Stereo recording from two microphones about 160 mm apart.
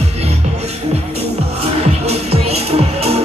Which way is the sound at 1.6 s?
40° right (ahead or behind).